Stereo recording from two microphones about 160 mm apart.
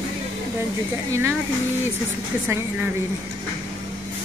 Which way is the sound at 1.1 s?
15° right (ahead or behind).